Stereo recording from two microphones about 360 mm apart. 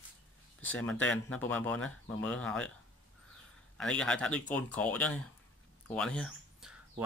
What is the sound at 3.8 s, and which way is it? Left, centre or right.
Speech, centre.